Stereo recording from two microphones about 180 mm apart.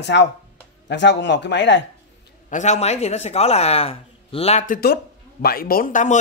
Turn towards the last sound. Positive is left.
turn(degrees=45)  # may be behind; listen again after turning